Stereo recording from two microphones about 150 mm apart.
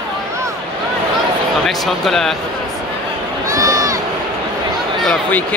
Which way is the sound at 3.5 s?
20° right (ahead or behind).